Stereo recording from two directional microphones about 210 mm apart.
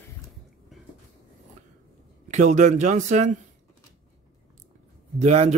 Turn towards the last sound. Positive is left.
turn(degrees=-30)  # may be behind; listen again after turning